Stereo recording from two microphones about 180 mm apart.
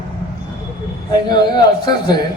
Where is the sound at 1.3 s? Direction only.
25° left (ahead or behind).